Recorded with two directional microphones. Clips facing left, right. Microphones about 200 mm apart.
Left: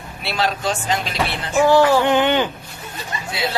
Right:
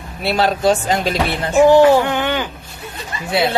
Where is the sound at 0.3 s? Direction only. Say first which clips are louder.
Right 7 dB; 40° right (ahead or behind).